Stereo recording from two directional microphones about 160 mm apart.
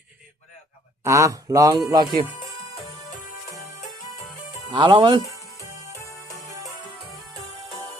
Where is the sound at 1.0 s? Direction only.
20° right (ahead or behind).